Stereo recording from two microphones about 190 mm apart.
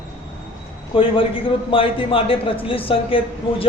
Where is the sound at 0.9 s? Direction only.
25° left (ahead or behind).